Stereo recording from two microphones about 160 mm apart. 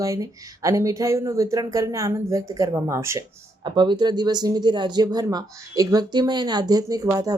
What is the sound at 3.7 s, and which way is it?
Speech, 30° right (ahead or behind).